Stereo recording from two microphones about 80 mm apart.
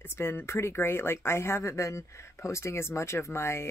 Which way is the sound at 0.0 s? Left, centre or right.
Left.